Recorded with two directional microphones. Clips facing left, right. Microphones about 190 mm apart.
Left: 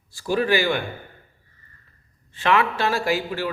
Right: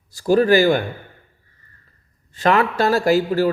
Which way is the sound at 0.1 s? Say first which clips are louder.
Right 7 dB; 40° right (ahead or behind).